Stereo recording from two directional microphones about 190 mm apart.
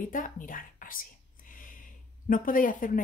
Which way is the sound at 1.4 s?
45° left (ahead or behind).